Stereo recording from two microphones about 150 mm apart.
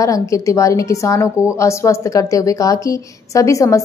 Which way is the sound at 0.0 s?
20° left (ahead or behind).